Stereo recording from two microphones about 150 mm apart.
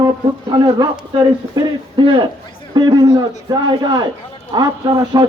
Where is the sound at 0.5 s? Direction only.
30° right (ahead or behind).